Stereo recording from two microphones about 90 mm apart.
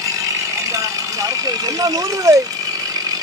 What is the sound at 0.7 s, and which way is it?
Speech, 40° right (ahead or behind).